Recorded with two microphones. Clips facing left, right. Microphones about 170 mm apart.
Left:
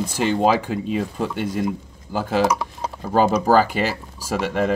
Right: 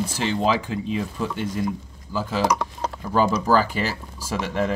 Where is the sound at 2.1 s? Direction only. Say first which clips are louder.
Left 2 dB; 55° left (ahead or behind).